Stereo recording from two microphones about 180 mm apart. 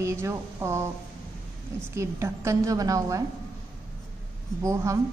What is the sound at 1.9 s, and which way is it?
A woman's voice, 15° right (ahead or behind).